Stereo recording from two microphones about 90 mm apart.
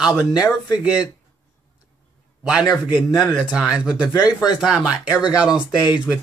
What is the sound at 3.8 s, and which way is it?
Speech, 10° right (ahead or behind).